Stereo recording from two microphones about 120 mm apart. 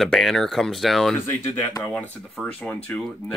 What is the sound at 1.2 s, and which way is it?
Speech, 15° left (ahead or behind).